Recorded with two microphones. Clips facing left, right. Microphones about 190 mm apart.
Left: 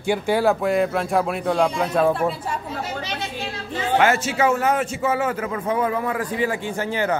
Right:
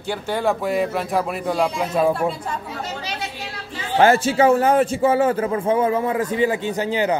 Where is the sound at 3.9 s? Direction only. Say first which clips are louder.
Right 4 dB; 30° right (ahead or behind); by 7.2 s 15° right (ahead or behind).